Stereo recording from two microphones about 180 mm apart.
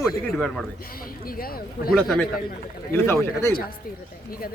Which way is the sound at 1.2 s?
55° left (ahead or behind).